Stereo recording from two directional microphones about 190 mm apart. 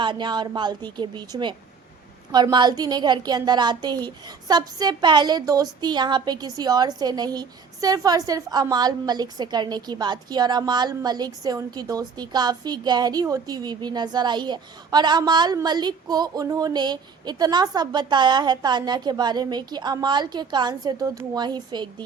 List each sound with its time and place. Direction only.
0.0 s a woman's voice: 25° right (ahead or behind)